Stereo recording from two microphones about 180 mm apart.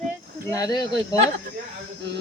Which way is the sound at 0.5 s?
20° left (ahead or behind).